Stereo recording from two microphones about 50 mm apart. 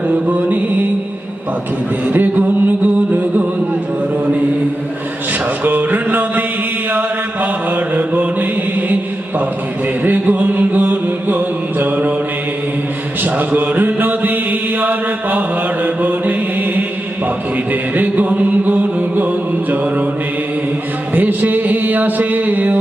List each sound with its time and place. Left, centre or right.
0.1 s music: right
2.0 s a sound: right
5.6 s music: right
7.9 s mantra: right
10.0 s music: right
13.2 s mantra: right
17.7 s music: right
21.2 s a sound: right